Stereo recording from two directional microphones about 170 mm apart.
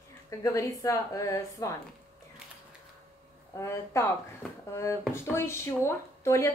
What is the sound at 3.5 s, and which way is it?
Speech, 15° left (ahead or behind).